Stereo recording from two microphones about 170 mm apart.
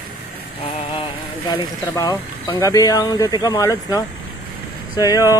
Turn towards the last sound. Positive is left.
turn(degrees=20)  # may be behind; listen again after turning